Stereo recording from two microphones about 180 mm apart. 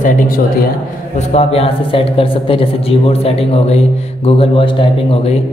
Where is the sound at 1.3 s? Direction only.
35° left (ahead or behind).